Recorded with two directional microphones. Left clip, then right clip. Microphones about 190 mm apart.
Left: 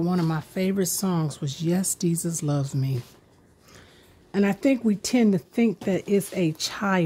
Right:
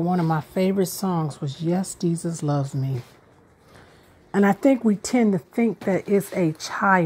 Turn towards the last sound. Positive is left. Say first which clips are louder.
# right 5 dB
turn(degrees=20)  # may be behind; listen again after turning